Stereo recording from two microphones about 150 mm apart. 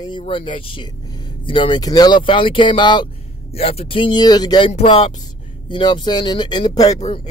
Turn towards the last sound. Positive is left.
turn(degrees=45)  # may be behind; listen again after turning